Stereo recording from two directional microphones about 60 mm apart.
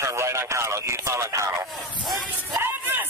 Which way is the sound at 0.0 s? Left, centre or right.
Right.